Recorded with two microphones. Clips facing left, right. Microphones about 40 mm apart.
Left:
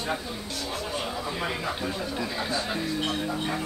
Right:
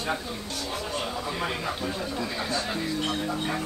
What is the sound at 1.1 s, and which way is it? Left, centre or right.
Speech, centre.